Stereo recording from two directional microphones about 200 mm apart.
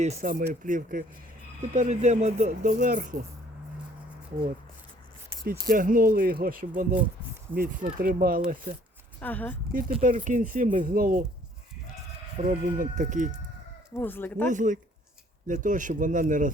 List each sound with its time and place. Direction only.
0.0 s speech: 40° right (ahead or behind)
5.5 s speech: 45° right (ahead or behind)
9.2 s speech: 10° left (ahead or behind)
10.0 s speech: 40° right (ahead or behind)
12.5 s speech: 45° right (ahead or behind)
13.9 s speech: 10° left (ahead or behind)
14.5 s speech: 40° right (ahead or behind)